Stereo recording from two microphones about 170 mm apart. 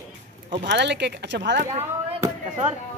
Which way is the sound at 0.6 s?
90° right.